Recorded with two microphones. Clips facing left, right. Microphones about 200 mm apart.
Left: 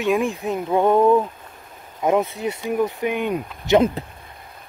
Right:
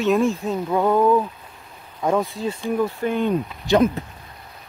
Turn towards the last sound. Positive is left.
turn(degrees=15)  # may be behind; listen again after turning